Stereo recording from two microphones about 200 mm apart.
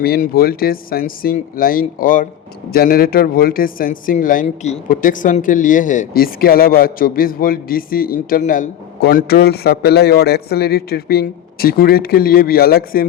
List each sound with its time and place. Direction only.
0.0 s speech: 50° left (ahead or behind)